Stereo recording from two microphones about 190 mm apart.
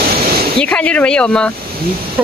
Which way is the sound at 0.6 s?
5° left (ahead or behind).